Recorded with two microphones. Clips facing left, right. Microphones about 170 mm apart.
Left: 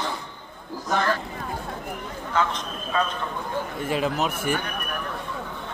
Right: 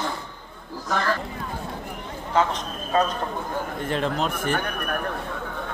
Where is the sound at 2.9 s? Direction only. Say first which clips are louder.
Right 4 dB; 40° right (ahead or behind).